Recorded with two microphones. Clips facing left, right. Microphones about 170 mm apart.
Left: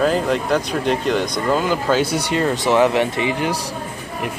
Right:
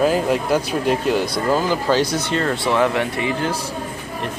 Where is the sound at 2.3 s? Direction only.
15° left (ahead or behind).